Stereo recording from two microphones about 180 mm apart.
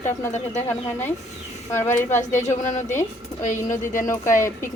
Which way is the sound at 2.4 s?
40° left (ahead or behind).